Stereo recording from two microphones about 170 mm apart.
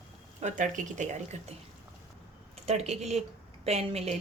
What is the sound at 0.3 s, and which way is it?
Speech, 45° right (ahead or behind).